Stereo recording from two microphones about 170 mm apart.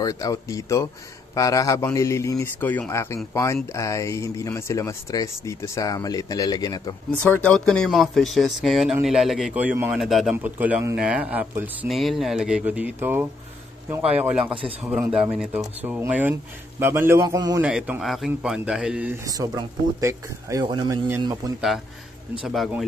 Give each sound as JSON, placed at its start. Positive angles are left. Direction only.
{"t": 0.0, "sound": "speech", "side_deg": 20}
{"t": 7.2, "sound": "speech", "side_deg": 10}
{"t": 11.9, "sound": "speech", "side_deg": 0}
{"t": 14.4, "sound": "a man's voice", "side_deg": -30}
{"t": 14.9, "sound": "speech", "side_deg": -5}
{"t": 17.6, "sound": "speech", "side_deg": -5}
{"t": 22.4, "sound": "speech", "side_deg": 0}